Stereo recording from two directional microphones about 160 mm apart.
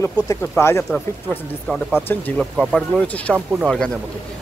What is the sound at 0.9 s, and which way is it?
Speech, 5° left (ahead or behind).